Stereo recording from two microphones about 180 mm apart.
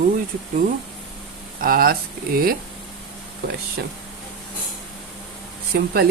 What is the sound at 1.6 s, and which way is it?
Speech, 55° right (ahead or behind).